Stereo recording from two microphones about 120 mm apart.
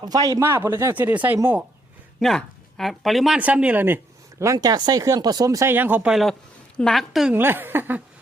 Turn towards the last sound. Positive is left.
turn(degrees=-15)  # may be behind; listen again after turning